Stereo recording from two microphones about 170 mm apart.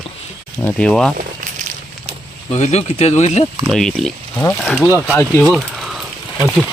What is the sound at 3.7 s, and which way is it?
Speech, 5° left (ahead or behind).